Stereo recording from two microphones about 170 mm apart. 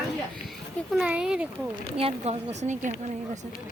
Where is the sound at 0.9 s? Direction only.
5° right (ahead or behind).